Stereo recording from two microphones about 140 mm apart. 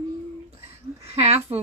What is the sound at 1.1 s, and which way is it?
Speech, 50° right (ahead or behind).